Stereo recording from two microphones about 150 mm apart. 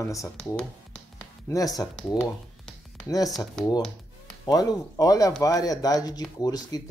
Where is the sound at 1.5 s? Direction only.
25° left (ahead or behind).